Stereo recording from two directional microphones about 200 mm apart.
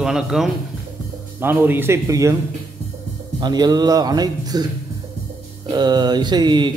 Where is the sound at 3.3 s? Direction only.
20° right (ahead or behind).